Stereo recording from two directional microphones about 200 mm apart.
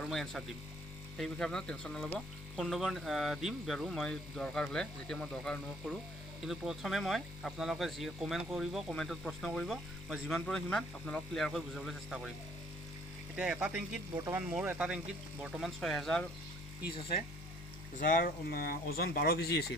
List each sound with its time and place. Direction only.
0.0 s speech: centre (ahead or behind)
13.3 s speech: 5° right (ahead or behind)
18.0 s speech: 45° left (ahead or behind)